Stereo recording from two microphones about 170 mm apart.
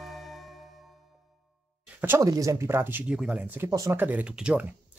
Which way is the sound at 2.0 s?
15° right (ahead or behind).